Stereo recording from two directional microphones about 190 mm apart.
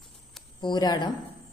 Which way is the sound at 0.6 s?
20° left (ahead or behind).